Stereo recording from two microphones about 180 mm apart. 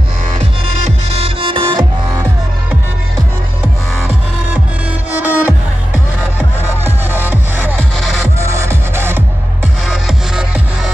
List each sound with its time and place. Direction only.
0.8 s music: 35° right (ahead or behind)
5.1 s music: 10° right (ahead or behind)
6.8 s music: 10° right (ahead or behind)
8.0 s music: centre (ahead or behind)
8.4 s music: 15° right (ahead or behind)
9.8 s music: 5° right (ahead or behind)